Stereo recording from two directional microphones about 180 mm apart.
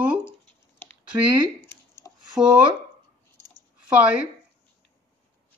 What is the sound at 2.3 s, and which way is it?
Speech, 5° right (ahead or behind).